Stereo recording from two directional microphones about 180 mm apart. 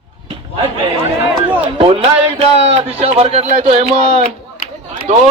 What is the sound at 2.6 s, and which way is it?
Speech, 35° right (ahead or behind).